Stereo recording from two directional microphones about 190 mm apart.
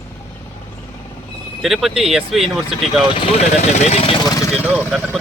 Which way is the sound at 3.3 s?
35° left (ahead or behind).